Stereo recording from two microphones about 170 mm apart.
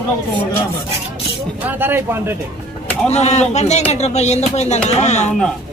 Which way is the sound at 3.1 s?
40° left (ahead or behind).